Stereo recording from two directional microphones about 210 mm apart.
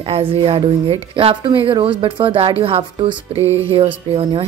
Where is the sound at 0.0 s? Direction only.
25° right (ahead or behind).